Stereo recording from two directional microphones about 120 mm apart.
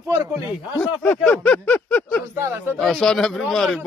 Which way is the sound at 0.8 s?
10° left (ahead or behind).